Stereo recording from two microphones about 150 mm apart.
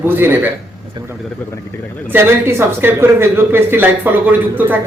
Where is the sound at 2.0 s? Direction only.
15° right (ahead or behind).